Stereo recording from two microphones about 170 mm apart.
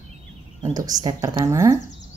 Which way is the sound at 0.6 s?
20° right (ahead or behind).